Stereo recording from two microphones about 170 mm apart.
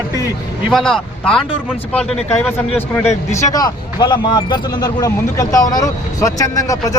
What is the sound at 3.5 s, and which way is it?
Speech, 25° left (ahead or behind).